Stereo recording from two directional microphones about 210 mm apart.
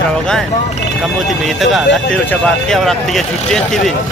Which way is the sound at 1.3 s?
Centre (ahead or behind).